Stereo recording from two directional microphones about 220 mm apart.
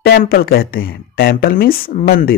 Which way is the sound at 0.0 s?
45° left (ahead or behind).